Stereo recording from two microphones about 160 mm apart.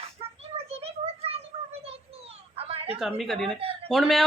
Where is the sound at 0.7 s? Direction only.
40° right (ahead or behind).